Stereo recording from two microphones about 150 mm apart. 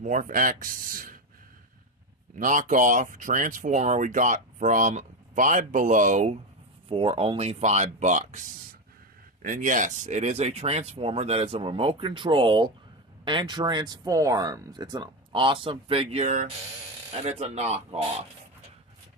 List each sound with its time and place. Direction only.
0.0 s speech: 60° right (ahead or behind)
2.3 s speech: 60° right (ahead or behind)
6.9 s speech: 40° right (ahead or behind)